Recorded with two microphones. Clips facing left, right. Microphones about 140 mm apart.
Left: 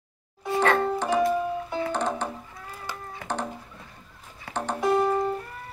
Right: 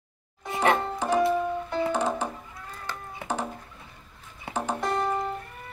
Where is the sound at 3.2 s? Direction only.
25° right (ahead or behind).